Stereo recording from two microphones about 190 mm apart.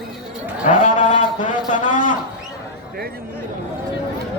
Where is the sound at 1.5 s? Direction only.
40° left (ahead or behind).